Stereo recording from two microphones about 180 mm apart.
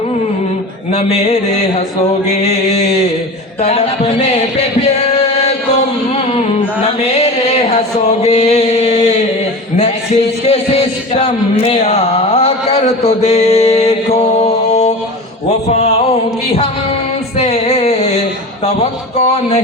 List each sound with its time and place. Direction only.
0.9 s mantra: 35° left (ahead or behind)
5.4 s chant: 35° left (ahead or behind)
7.0 s mantra: 35° left (ahead or behind)
9.7 s music: 35° left (ahead or behind)
17.3 s a sound: 35° left (ahead or behind)